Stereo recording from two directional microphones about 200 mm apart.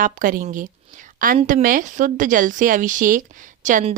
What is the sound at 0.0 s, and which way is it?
A woman's voice, 45° right (ahead or behind).